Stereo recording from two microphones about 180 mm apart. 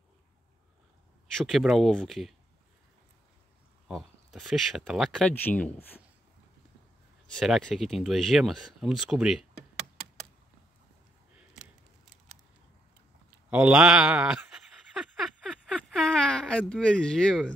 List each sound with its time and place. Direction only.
1.3 s speech: centre (ahead or behind)
3.8 s speech: centre (ahead or behind)
7.3 s speech: centre (ahead or behind)
13.5 s a sound: 10° right (ahead or behind)